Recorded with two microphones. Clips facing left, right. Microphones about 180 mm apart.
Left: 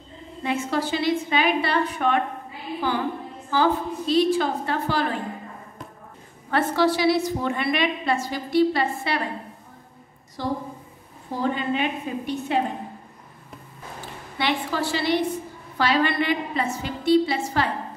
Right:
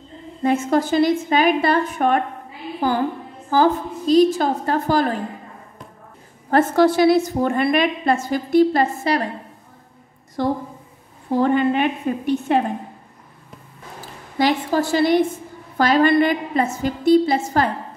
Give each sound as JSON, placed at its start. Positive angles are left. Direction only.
{"t": 0.4, "sound": "a woman's voice", "side_deg": -45}
{"t": 6.5, "sound": "a woman's voice", "side_deg": -50}
{"t": 10.4, "sound": "a woman's voice", "side_deg": -60}
{"t": 14.0, "sound": "a woman's voice", "side_deg": -40}